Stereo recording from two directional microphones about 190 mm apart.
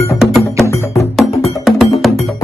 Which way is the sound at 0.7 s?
15° left (ahead or behind).